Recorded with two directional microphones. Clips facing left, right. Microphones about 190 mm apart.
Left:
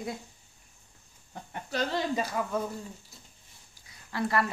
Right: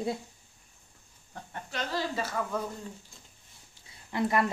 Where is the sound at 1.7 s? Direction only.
35° left (ahead or behind).